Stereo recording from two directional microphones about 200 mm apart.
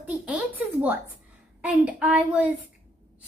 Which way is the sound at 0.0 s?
5° right (ahead or behind).